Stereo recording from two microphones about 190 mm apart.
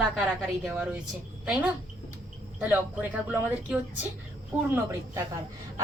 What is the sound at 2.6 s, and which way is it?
Speech, 5° right (ahead or behind).